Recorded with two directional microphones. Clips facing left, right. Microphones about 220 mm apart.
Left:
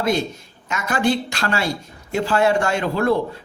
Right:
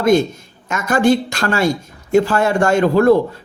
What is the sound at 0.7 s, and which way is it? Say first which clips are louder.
Speech: right 6 dB; 45° right (ahead or behind).